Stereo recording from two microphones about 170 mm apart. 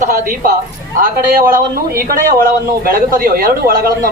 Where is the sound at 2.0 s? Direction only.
55° right (ahead or behind).